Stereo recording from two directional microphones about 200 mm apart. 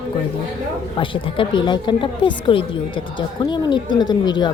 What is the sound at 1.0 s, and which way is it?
A woman's voice, 25° left (ahead or behind).